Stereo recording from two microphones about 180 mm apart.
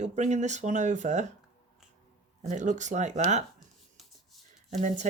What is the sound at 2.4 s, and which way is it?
Speech, 45° right (ahead or behind).